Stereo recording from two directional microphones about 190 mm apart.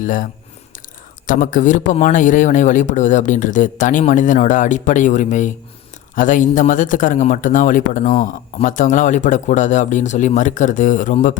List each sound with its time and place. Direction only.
0.0 s speech: 45° left (ahead or behind)
1.3 s a man's voice: 45° left (ahead or behind)